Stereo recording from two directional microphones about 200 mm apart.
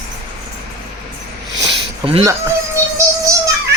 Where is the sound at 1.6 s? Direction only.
30° right (ahead or behind).